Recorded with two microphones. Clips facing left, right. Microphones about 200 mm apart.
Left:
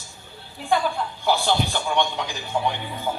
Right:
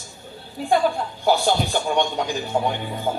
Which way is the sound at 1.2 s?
45° right (ahead or behind).